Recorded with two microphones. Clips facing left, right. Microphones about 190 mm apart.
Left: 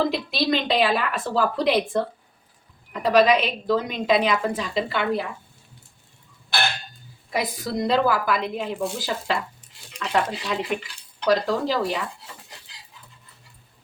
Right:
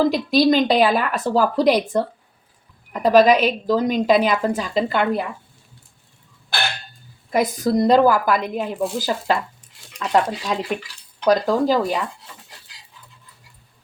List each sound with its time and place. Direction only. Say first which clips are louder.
0.1 s a woman's voice: right 7 dB; 40° right (ahead or behind)
3.0 s speech: right 4 dB; 45° right (ahead or behind)
7.3 s speech: right 8 dB; 45° right (ahead or behind)